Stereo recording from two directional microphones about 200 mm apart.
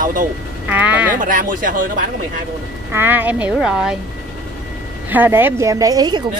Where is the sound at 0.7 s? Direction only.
10° right (ahead or behind).